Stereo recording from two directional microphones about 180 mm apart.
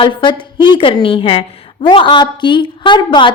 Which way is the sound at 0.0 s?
25° left (ahead or behind).